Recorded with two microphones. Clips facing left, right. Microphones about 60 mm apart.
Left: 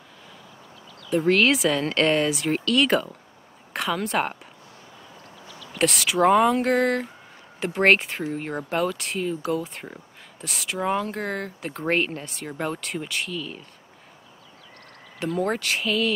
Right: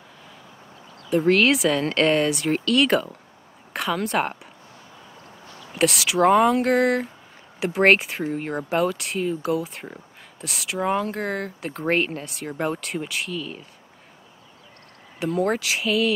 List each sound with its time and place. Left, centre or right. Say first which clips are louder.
1.1 s a woman's voice: right 1 dB; centre
5.5 s a sound: even; right
5.8 s speech: right 1 dB; centre
15.1 s speech: right 2 dB; centre